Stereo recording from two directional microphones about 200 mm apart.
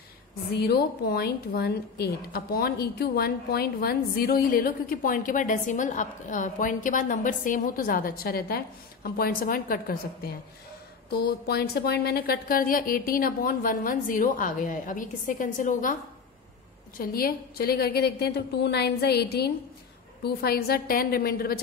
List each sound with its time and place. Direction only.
0.5 s a woman's voice: 55° left (ahead or behind)
17.0 s a woman's voice: 45° left (ahead or behind)